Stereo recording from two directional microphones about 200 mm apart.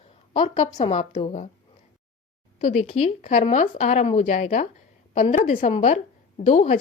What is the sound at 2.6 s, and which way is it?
Speech, 35° left (ahead or behind).